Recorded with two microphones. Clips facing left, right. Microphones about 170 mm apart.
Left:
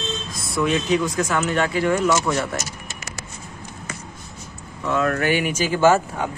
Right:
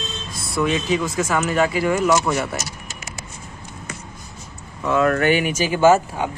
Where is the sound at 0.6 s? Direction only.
Centre (ahead or behind).